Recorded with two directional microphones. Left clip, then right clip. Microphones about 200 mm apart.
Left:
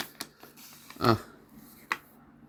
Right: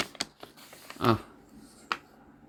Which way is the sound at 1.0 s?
5° left (ahead or behind).